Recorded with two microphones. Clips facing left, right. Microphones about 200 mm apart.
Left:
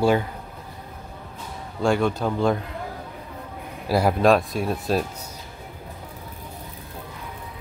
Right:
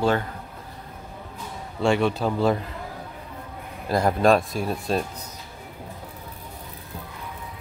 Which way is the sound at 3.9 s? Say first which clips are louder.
Left 1 dB; 5° left (ahead or behind).